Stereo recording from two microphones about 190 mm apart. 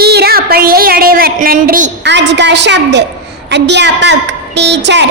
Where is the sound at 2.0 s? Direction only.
65° right (ahead or behind).